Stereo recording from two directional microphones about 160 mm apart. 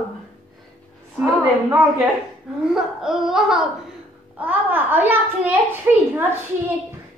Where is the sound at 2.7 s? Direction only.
5° right (ahead or behind).